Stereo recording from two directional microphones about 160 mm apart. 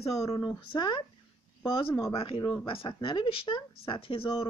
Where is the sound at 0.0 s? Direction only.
20° left (ahead or behind).